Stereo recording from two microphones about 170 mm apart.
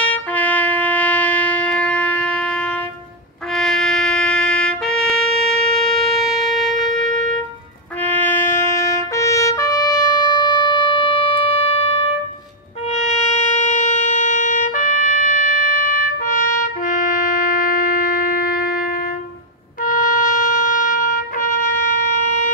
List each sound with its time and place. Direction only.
0.0 s trumpet: 10° left (ahead or behind)
3.5 s music: centre (ahead or behind)
5.8 s shofar: centre (ahead or behind)
7.0 s music: centre (ahead or behind)
8.0 s trumpet: 10° left (ahead or behind); by 12.0 s 35° left (ahead or behind)
12.9 s music: 45° left (ahead or behind); by 18.9 s 60° left (ahead or behind)
19.8 s trumpet: 55° left (ahead or behind)